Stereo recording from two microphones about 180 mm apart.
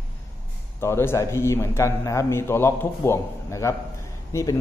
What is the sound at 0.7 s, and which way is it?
A man's voice, 15° left (ahead or behind).